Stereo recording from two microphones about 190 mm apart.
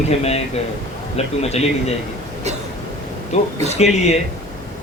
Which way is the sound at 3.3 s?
35° left (ahead or behind).